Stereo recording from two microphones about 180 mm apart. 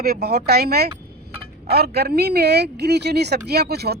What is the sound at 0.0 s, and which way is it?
Speech, 60° right (ahead or behind).